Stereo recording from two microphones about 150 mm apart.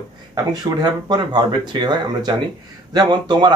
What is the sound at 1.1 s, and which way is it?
Speech, 30° right (ahead or behind).